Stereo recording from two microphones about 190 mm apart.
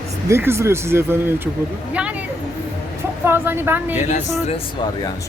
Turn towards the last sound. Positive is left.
turn(degrees=40)  # may be behind; listen again after turning